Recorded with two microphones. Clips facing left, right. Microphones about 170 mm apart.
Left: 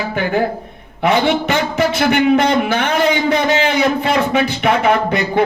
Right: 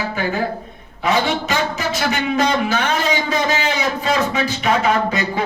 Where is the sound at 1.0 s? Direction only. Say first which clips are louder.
Left 4 dB; 60° left (ahead or behind).